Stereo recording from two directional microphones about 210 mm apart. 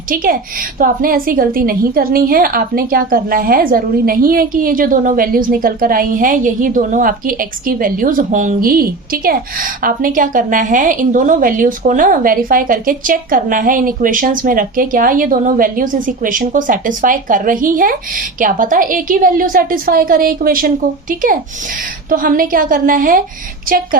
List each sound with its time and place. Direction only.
0.1 s a woman's voice: 40° right (ahead or behind)